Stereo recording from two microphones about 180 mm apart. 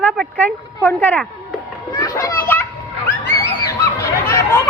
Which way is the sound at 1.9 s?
20° left (ahead or behind).